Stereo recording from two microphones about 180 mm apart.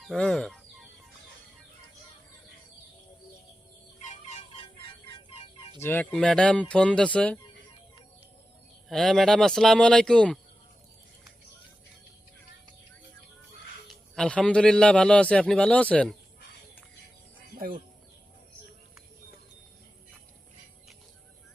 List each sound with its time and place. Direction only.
0.0 s fowl: 5° left (ahead or behind)
4.1 s music: 35° left (ahead or behind)
5.8 s a man's voice: 10° left (ahead or behind)
8.9 s a man's voice: centre (ahead or behind)
13.8 s a man's voice: 5° left (ahead or behind)